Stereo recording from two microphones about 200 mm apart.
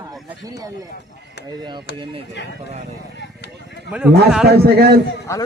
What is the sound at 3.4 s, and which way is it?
Run, 55° left (ahead or behind).